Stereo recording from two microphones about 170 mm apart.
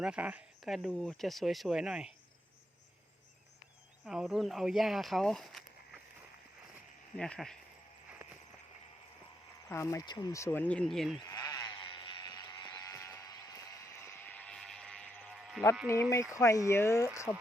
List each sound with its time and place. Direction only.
0.0 s speech: 5° right (ahead or behind)
4.0 s speech: 5° right (ahead or behind)
7.2 s speech: 5° left (ahead or behind)
9.6 s speech: 15° left (ahead or behind)
11.2 s a sound: 20° left (ahead or behind); by 15.0 s 5° left (ahead or behind)
15.9 s speech: 15° left (ahead or behind)